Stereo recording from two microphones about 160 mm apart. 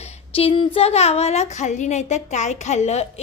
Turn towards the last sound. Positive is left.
turn(degrees=45)  # may be behind; listen again after turning